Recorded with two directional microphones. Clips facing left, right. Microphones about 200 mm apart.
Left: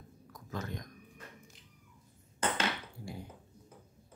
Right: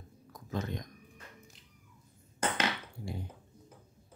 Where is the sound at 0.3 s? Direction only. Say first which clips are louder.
Right 4 dB; 20° right (ahead or behind).